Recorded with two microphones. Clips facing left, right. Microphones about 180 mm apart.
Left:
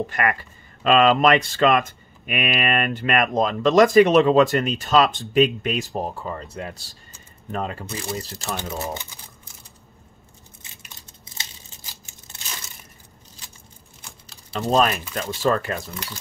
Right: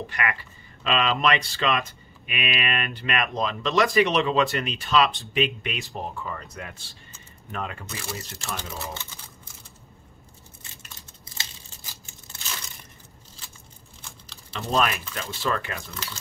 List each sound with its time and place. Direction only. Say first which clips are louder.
0.0 s speech: left 6 dB; 45° left (ahead or behind)
8.5 s speech: left 8 dB; 15° left (ahead or behind)
14.6 s speech: left 5 dB; 40° left (ahead or behind)